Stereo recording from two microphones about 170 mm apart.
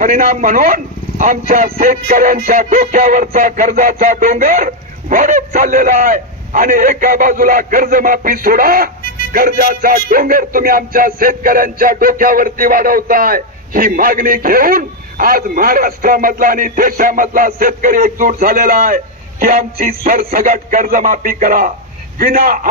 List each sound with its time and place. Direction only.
0.0 s a man's voice: 55° right (ahead or behind)
9.3 s music: 55° right (ahead or behind)
19.4 s a man's voice: 55° right (ahead or behind)
22.2 s music: 55° right (ahead or behind)